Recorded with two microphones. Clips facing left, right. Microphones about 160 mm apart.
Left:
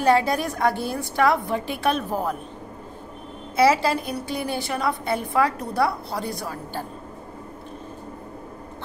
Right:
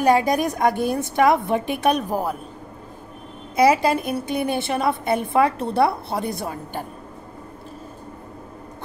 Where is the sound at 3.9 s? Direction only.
55° right (ahead or behind).